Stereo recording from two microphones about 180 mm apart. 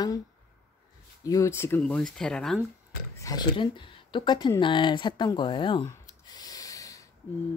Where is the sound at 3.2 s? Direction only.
20° left (ahead or behind).